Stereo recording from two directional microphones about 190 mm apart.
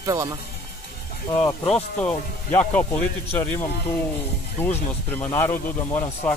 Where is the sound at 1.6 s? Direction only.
5° left (ahead or behind).